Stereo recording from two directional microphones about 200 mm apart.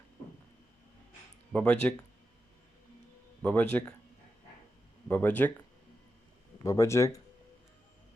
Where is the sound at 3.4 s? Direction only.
5° left (ahead or behind).